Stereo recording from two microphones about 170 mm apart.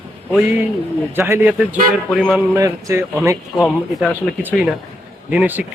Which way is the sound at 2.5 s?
20° right (ahead or behind).